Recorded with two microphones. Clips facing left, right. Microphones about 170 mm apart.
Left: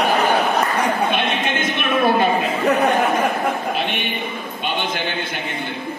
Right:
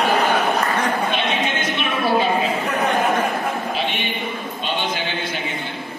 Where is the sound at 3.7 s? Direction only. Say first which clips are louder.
Left 1 dB; 55° left (ahead or behind).